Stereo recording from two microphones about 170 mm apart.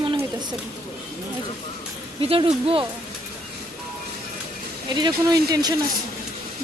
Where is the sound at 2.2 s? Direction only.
35° right (ahead or behind).